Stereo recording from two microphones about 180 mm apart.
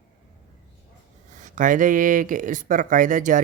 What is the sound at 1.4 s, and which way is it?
Speech, 45° right (ahead or behind).